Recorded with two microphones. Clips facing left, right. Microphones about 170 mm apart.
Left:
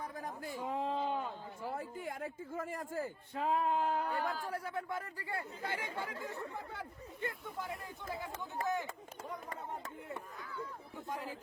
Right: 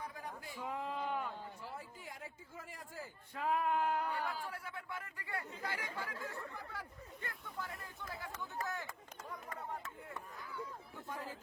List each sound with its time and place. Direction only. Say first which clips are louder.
0.0 s a sound: left 4 dB; 45° left (ahead or behind)
0.6 s a sound: left 4 dB; 30° left (ahead or behind)
1.6 s speech: left 8 dB; 55° left (ahead or behind)
3.3 s speech: left 2 dB; 25° left (ahead or behind)
4.3 s speech: left 5 dB; 45° left (ahead or behind); by 9.0 s 20° left (ahead or behind)
11.1 s speech: left 3 dB; 15° left (ahead or behind)